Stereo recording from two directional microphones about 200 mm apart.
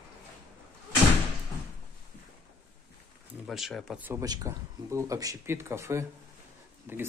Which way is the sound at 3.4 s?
Centre (ahead or behind).